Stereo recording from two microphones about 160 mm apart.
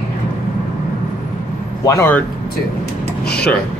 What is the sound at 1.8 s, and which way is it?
Speech, 15° left (ahead or behind).